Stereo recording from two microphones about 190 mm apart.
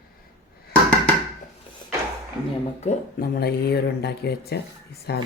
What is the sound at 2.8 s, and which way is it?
Speech, 50° left (ahead or behind).